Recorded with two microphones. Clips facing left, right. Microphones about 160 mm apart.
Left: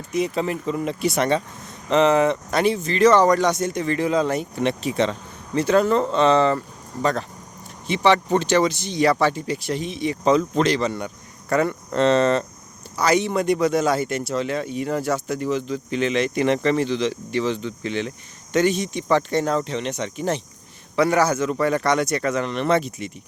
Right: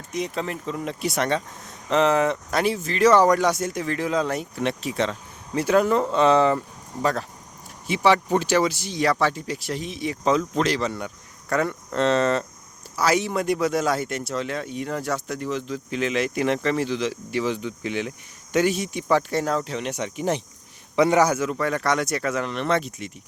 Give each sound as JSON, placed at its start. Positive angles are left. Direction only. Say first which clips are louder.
{"t": 0.1, "sound": "a man's voice", "louder": "left 5 dB", "side_deg": 5}
{"t": 21.5, "sound": "a man's voice", "louder": "left 3 dB", "side_deg": 0}